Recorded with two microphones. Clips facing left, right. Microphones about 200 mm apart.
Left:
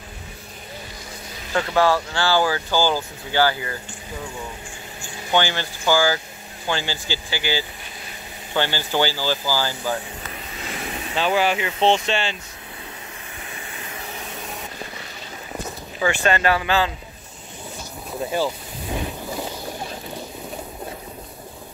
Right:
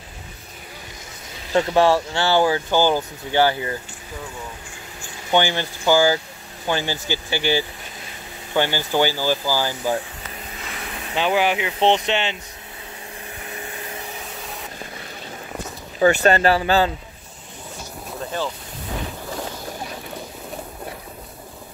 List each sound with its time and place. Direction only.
1.5 s speech: 25° right (ahead or behind)
5.3 s speech: 15° right (ahead or behind)
11.1 s speech: 15° right (ahead or behind)
16.0 s speech: 40° right (ahead or behind)
18.2 s speech: 10° left (ahead or behind)
18.9 s a sound: 15° left (ahead or behind)